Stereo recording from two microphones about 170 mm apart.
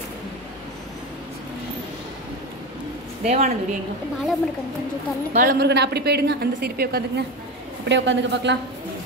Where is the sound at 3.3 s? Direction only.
40° right (ahead or behind).